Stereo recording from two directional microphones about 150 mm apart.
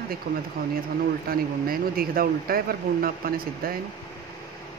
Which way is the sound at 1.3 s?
80° right.